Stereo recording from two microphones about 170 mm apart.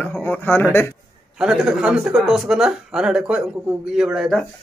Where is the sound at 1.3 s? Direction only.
5° right (ahead or behind).